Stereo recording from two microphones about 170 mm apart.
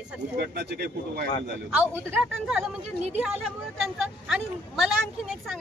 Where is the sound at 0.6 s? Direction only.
70° right (ahead or behind).